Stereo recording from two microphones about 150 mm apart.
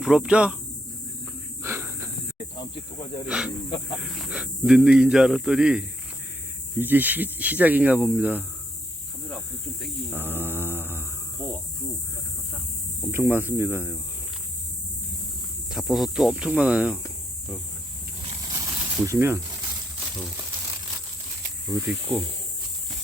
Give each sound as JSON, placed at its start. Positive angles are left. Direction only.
{"t": 0.0, "sound": "speech", "side_deg": -5}
{"t": 1.6, "sound": "a sound", "side_deg": -15}
{"t": 2.6, "sound": "cricket", "side_deg": 35}
{"t": 3.2, "sound": "speech", "side_deg": -5}
{"t": 10.1, "sound": "mantra", "side_deg": -15}
{"t": 11.4, "sound": "cricket", "side_deg": 10}
{"t": 13.1, "sound": "speech", "side_deg": -15}
{"t": 15.7, "sound": "speech", "side_deg": 0}
{"t": 18.4, "sound": "snake", "side_deg": -25}